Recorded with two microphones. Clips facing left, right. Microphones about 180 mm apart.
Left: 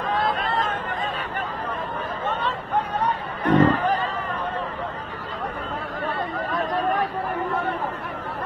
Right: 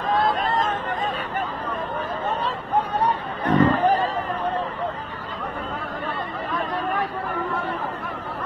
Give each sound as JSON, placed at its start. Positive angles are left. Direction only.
{"t": 0.4, "sound": "a sound", "side_deg": -45}
{"t": 2.2, "sound": "chatter", "side_deg": -35}
{"t": 6.5, "sound": "chatter", "side_deg": 45}